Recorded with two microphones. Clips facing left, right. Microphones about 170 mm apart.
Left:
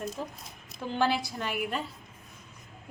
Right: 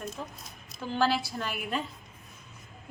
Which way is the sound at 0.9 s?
20° left (ahead or behind).